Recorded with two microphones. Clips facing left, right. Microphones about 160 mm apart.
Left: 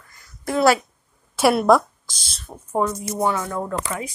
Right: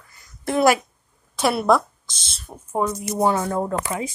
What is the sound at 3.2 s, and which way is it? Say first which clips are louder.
Speech: right 3 dB; 35° right (ahead or behind).